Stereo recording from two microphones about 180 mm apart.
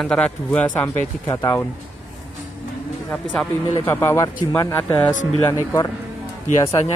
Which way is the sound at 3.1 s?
5° left (ahead or behind).